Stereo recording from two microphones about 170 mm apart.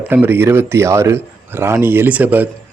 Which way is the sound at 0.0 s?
10° right (ahead or behind).